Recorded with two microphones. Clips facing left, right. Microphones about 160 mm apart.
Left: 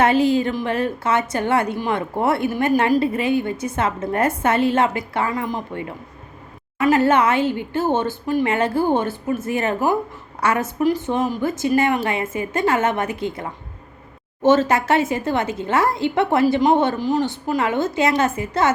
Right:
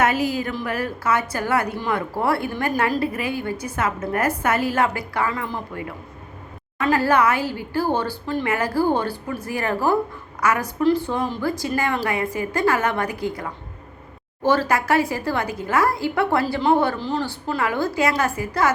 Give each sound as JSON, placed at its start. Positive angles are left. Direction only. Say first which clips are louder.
{"t": 0.0, "sound": "a woman's voice", "louder": "left 5 dB", "side_deg": 25}
{"t": 10.4, "sound": "a woman's voice", "louder": "left 1 dB", "side_deg": 30}